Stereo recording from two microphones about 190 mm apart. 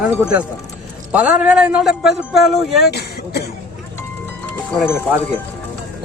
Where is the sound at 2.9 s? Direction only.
60° left (ahead or behind).